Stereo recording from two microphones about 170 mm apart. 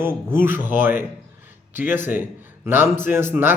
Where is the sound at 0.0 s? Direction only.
15° right (ahead or behind).